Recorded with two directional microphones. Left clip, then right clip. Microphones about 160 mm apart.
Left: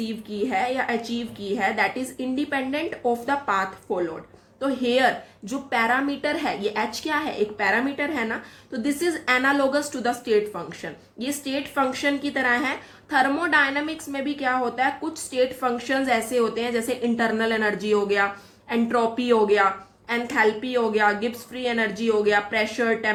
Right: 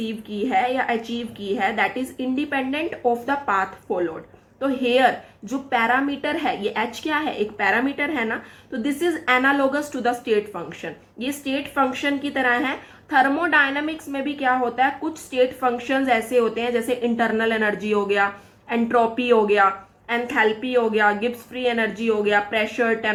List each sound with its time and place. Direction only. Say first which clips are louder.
0.4 s a woman's voice: right 3 dB; 20° right (ahead or behind)